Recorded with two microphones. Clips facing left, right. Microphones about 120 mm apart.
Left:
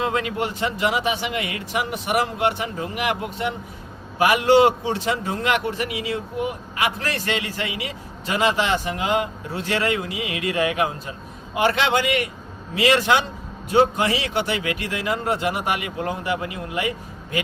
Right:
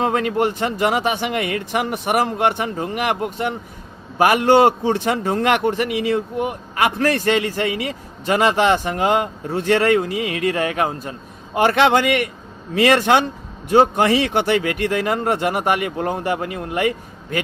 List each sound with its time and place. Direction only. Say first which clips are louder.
0.0 s a man's voice: right 5 dB; 50° right (ahead or behind)